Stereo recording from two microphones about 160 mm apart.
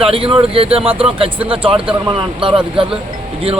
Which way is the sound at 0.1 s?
35° right (ahead or behind).